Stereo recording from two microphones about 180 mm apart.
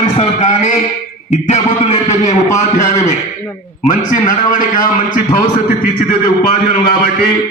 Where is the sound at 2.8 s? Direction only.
40° left (ahead or behind).